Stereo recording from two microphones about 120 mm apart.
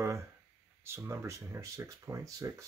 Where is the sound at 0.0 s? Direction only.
25° right (ahead or behind).